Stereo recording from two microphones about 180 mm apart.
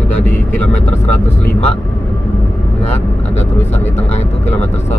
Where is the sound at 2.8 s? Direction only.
35° left (ahead or behind).